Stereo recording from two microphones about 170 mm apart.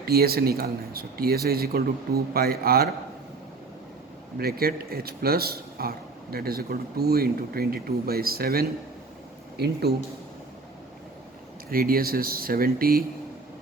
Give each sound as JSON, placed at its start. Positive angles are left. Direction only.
{"t": 0.0, "sound": "speech", "side_deg": -65}
{"t": 4.4, "sound": "speech", "side_deg": -65}
{"t": 11.7, "sound": "speech", "side_deg": -60}